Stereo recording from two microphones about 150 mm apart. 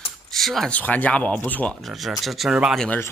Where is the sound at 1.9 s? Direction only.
Centre (ahead or behind).